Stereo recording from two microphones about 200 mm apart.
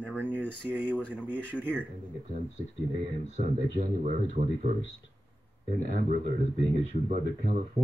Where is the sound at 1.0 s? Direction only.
5° left (ahead or behind).